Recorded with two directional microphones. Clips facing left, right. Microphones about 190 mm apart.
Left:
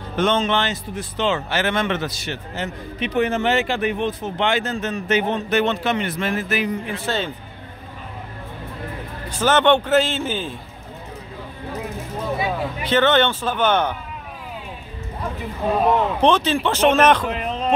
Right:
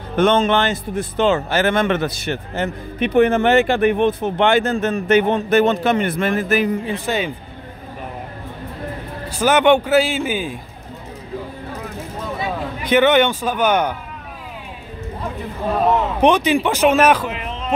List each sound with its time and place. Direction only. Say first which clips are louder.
0.1 s speech: right 4 dB; 55° right (ahead or behind)
6.9 s a man's voice: right 3 dB; 15° right (ahead or behind)
9.3 s a man's voice: right 2 dB; 10° right (ahead or behind)
12.8 s a man's voice: right 3 dB; 15° right (ahead or behind)
16.2 s a man's voice: right 3 dB; 15° right (ahead or behind)
17.3 s speech: left 3 dB; 40° left (ahead or behind)